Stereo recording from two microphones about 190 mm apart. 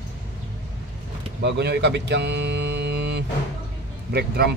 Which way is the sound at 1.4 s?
65° right (ahead or behind).